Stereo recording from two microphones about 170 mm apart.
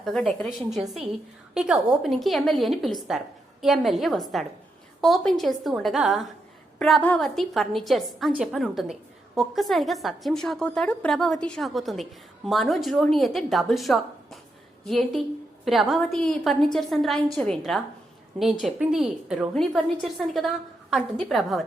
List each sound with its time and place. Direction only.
0.0 s a woman's voice: 5° left (ahead or behind)